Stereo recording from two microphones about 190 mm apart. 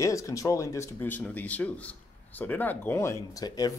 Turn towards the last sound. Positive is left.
turn(degrees=20)  # may be behind; listen again after turning